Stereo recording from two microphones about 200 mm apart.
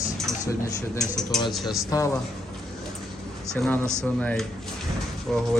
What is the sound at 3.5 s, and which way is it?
Speech, 5° left (ahead or behind).